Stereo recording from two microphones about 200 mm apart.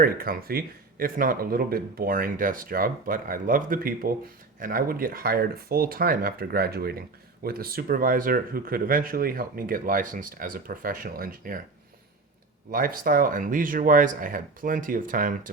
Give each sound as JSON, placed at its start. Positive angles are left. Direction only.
{"t": 0.0, "sound": "speech", "side_deg": -45}
{"t": 12.7, "sound": "speech", "side_deg": -45}